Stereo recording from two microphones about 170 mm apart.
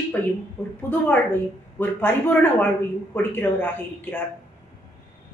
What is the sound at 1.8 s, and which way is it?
Speech, 10° left (ahead or behind).